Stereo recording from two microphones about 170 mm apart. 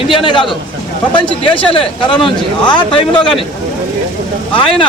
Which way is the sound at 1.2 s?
30° left (ahead or behind).